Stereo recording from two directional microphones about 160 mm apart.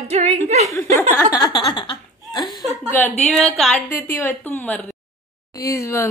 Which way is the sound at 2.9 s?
10° left (ahead or behind).